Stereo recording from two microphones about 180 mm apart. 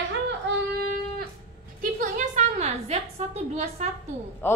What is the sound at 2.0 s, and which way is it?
A woman's voice, 45° right (ahead or behind).